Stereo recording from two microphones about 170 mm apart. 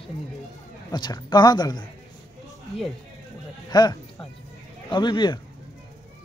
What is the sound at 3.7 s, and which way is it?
Speech, 25° left (ahead or behind).